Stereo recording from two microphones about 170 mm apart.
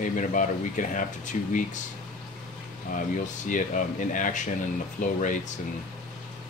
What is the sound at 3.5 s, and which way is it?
Speech, 50° left (ahead or behind).